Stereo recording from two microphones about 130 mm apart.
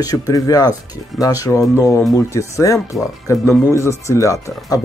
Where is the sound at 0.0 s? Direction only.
30° left (ahead or behind).